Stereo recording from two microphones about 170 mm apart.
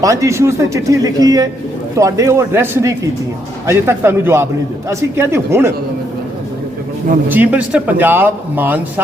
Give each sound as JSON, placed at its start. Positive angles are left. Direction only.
{"t": 0.0, "sound": "a man's voice", "side_deg": -20}
{"t": 7.3, "sound": "speech", "side_deg": -10}